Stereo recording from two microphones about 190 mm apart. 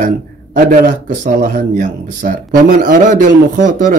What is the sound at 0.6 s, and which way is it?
Speech, 45° right (ahead or behind).